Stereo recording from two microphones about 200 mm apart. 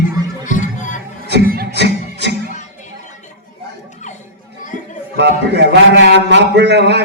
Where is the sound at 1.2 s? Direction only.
50° right (ahead or behind).